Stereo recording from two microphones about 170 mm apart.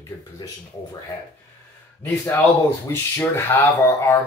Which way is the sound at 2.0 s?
15° left (ahead or behind).